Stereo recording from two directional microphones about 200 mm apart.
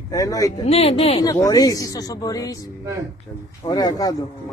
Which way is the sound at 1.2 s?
20° left (ahead or behind).